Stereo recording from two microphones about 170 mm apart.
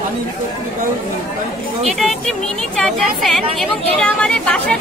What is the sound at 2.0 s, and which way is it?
A woman's voice, centre (ahead or behind).